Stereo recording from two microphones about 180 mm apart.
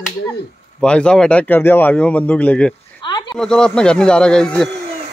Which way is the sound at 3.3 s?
5° left (ahead or behind).